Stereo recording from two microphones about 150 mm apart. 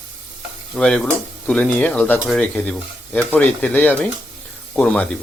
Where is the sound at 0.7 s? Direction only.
5° left (ahead or behind).